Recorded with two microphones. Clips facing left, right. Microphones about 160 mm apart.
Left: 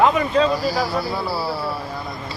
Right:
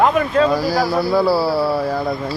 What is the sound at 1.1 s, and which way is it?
Speech, 90° right.